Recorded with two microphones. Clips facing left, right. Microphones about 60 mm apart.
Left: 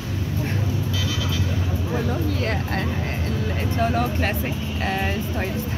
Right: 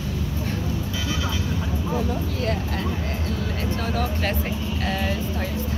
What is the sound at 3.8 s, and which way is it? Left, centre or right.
Speech, left.